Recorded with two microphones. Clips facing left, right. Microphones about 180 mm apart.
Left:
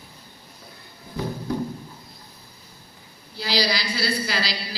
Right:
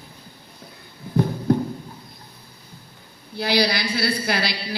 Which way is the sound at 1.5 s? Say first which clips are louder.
Right 7 dB; 60° right (ahead or behind).